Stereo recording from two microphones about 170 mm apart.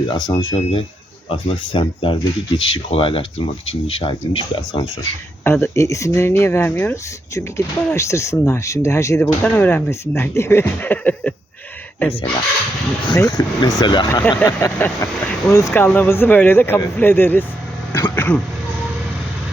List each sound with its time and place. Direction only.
0.1 s speech: 25° left (ahead or behind)
5.4 s speech: 15° left (ahead or behind)
13.1 s speech: 20° left (ahead or behind)
14.1 s speech: 15° left (ahead or behind)
17.9 s a sound: 15° left (ahead or behind)